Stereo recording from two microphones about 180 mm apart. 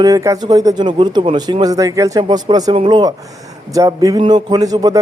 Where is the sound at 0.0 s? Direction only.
20° right (ahead or behind).